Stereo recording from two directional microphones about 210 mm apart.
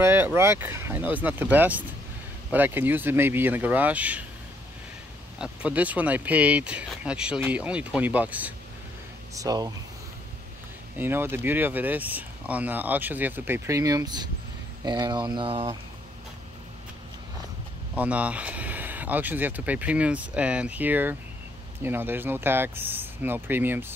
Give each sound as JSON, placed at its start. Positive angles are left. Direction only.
{"t": 0.0, "sound": "speech", "side_deg": -10}
{"t": 5.4, "sound": "speech", "side_deg": -5}
{"t": 11.0, "sound": "speech", "side_deg": -10}
{"t": 17.9, "sound": "speech", "side_deg": -5}